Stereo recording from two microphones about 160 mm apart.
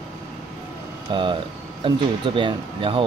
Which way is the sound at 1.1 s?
30° right (ahead or behind).